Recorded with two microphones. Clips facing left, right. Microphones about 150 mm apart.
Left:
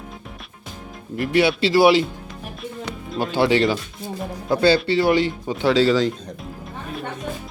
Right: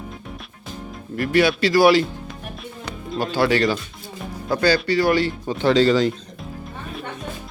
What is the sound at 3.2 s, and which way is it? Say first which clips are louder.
Speech: left 1 dB; 20° left (ahead or behind).